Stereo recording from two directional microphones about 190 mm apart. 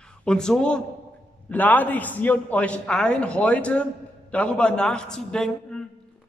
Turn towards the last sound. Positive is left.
turn(degrees=5)  # may be behind; listen again after turning